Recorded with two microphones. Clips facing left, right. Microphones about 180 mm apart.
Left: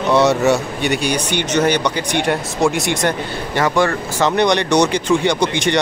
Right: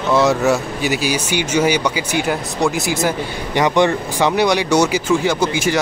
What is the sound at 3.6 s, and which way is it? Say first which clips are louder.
Speech: right 2 dB; 20° right (ahead or behind).